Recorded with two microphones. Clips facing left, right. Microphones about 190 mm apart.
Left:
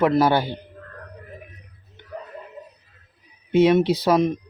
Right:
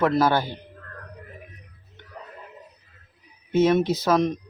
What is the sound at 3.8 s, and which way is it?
Speech, 65° left (ahead or behind).